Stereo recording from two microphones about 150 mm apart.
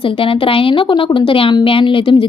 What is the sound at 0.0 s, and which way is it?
A woman's voice, 35° left (ahead or behind).